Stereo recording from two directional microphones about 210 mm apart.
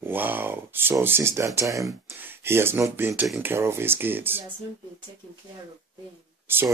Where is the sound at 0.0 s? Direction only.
10° right (ahead or behind).